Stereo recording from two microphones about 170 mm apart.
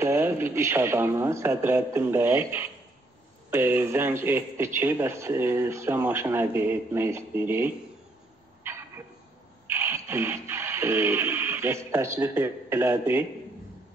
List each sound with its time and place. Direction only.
0.0 s speech: 15° right (ahead or behind)
9.7 s music: 15° right (ahead or behind)